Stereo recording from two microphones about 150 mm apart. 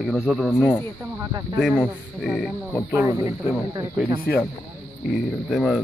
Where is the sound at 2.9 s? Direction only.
20° right (ahead or behind).